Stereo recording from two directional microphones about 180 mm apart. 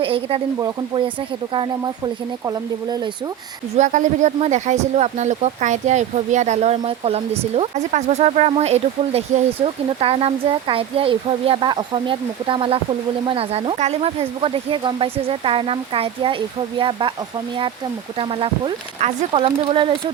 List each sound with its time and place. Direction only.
0.0 s speech: 30° right (ahead or behind)
3.8 s speech: 40° right (ahead or behind)
18.2 s speech: 30° right (ahead or behind)